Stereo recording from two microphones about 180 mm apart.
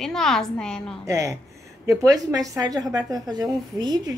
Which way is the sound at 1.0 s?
15° right (ahead or behind).